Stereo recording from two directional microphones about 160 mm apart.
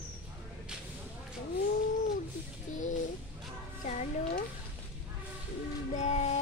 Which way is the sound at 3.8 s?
50° left (ahead or behind).